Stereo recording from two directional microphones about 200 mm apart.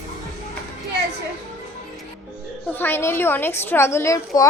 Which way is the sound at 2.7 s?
10° left (ahead or behind).